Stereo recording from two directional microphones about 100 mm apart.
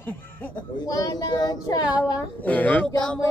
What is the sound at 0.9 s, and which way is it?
Speech, 40° left (ahead or behind).